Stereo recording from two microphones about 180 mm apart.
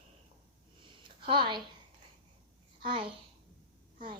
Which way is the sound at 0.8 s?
25° right (ahead or behind).